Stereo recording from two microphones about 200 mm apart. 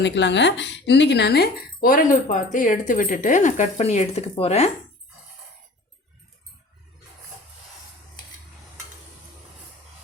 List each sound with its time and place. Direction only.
0.0 s speech: 60° left (ahead or behind); by 4.7 s 30° left (ahead or behind)